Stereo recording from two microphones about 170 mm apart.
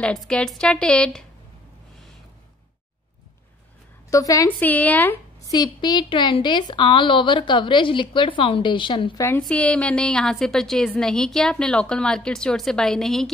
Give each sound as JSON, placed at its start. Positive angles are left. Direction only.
{"t": 0.0, "sound": "a woman's voice", "side_deg": 5}
{"t": 4.1, "sound": "a woman's voice", "side_deg": 20}
{"t": 5.5, "sound": "a woman's voice", "side_deg": 25}
{"t": 9.4, "sound": "a woman's voice", "side_deg": 5}